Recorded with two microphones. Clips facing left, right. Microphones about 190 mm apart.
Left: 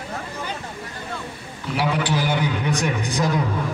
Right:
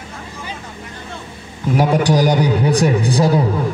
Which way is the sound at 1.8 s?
45° right (ahead or behind).